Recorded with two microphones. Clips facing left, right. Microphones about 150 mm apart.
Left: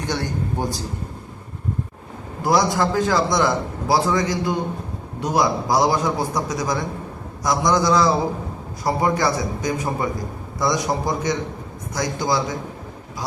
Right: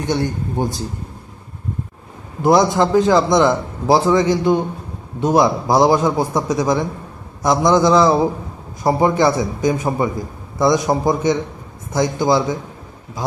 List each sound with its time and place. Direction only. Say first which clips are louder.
0.0 s a man's voice: right 5 dB; 20° right (ahead or behind)
2.4 s a man's voice: right 5 dB; 25° right (ahead or behind)